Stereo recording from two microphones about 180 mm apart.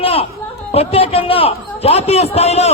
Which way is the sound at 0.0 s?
30° left (ahead or behind).